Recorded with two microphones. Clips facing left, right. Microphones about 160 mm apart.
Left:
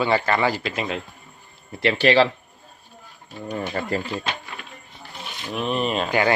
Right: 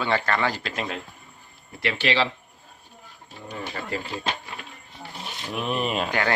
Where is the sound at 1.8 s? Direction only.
35° left (ahead or behind).